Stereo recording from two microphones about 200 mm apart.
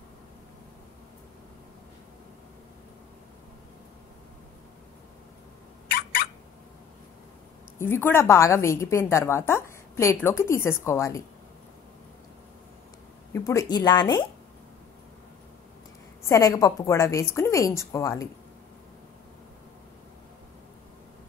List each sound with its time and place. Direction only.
7.8 s a woman's voice: 10° left (ahead or behind)
13.3 s speech: 15° left (ahead or behind)
16.3 s a woman's voice: 15° left (ahead or behind)